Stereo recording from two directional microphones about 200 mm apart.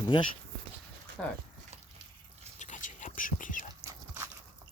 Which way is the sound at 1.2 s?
Centre (ahead or behind).